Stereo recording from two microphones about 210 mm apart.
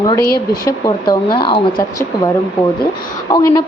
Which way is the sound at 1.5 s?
20° left (ahead or behind).